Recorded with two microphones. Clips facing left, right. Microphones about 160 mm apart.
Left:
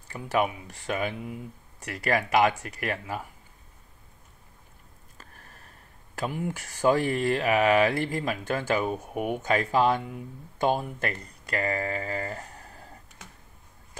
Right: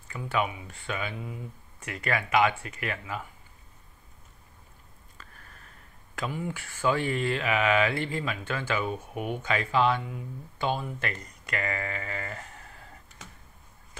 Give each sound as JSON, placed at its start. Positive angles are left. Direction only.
{"t": 0.1, "sound": "speech", "side_deg": 40}
{"t": 5.1, "sound": "a sound", "side_deg": 40}
{"t": 6.1, "sound": "speech", "side_deg": 45}
{"t": 9.1, "sound": "speech", "side_deg": 5}
{"t": 9.4, "sound": "speech", "side_deg": 45}